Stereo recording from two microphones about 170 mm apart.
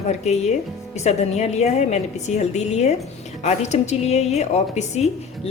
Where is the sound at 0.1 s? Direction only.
40° left (ahead or behind).